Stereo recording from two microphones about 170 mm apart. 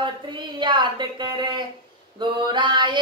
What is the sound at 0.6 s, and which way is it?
Female singing, 30° right (ahead or behind).